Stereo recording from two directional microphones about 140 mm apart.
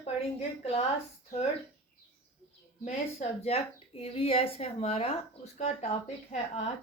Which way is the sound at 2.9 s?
50° left (ahead or behind).